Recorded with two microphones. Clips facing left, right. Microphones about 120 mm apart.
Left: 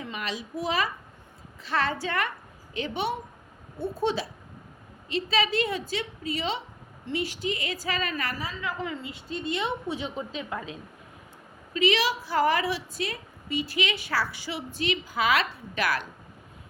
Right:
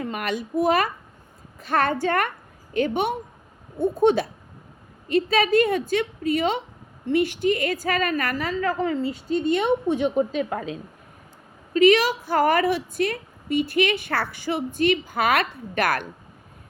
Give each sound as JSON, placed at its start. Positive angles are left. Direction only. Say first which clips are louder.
{"t": 0.0, "sound": "a child's voice", "louder": "right 7 dB", "side_deg": -55}
{"t": 11.7, "sound": "a woman's voice", "louder": "right 8 dB", "side_deg": -50}